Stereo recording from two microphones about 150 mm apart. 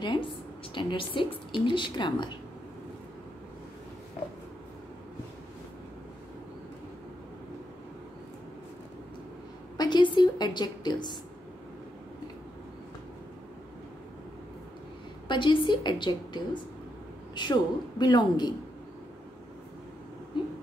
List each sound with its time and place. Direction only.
0.0 s a woman's voice: 30° left (ahead or behind)
9.8 s a sound: 30° left (ahead or behind)
10.1 s a woman's voice: 30° left (ahead or behind)
15.2 s a woman's voice: 35° left (ahead or behind)
20.3 s vehicle: 30° left (ahead or behind)